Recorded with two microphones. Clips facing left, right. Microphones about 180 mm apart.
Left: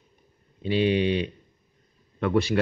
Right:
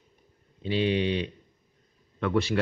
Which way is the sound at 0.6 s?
10° left (ahead or behind).